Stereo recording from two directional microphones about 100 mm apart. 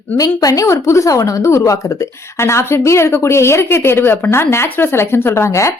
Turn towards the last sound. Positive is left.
turn(degrees=30)  # may be behind; listen again after turning